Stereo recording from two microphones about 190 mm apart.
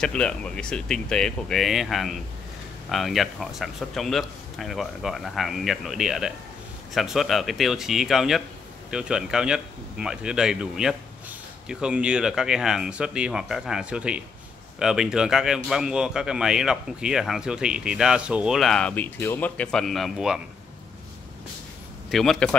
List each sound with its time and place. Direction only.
0.0 s speech: 5° left (ahead or behind)
22.1 s speech: centre (ahead or behind)